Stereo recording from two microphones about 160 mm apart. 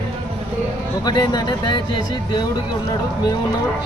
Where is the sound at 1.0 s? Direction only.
25° left (ahead or behind).